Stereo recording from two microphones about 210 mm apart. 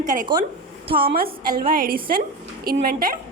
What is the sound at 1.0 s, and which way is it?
A woman's voice, 45° right (ahead or behind).